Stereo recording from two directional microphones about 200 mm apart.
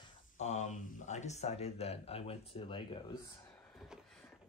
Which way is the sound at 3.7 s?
Centre (ahead or behind).